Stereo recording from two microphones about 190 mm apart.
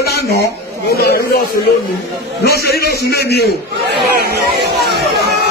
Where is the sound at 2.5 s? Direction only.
55° left (ahead or behind).